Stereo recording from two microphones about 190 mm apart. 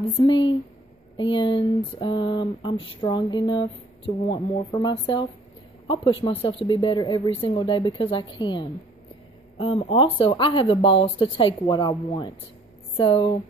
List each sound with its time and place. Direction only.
0.2 s speech: 20° left (ahead or behind)